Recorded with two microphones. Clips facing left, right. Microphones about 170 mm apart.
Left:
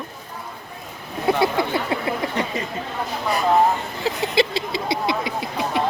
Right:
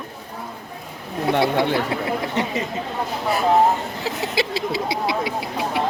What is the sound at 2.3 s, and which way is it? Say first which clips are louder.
Speech: right 2 dB; 20° right (ahead or behind).